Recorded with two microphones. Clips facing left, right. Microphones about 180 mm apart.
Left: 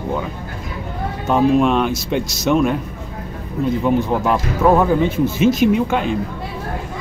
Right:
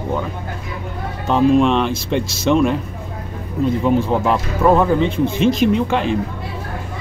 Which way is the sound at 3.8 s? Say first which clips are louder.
Right 1 dB; centre (ahead or behind).